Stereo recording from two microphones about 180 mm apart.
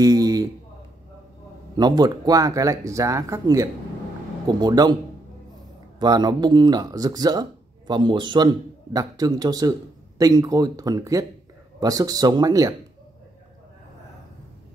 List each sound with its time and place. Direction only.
0.0 s a sound: 20° right (ahead or behind)
1.8 s speech: 25° right (ahead or behind)
5.9 s speech: 25° right (ahead or behind)